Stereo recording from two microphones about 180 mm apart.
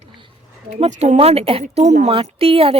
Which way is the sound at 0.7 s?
35° right (ahead or behind).